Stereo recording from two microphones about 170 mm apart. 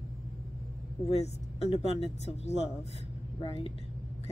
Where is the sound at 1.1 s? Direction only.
40° left (ahead or behind).